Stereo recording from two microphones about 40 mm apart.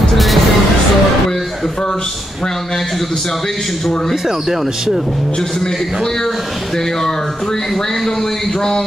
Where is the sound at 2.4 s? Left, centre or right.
Centre.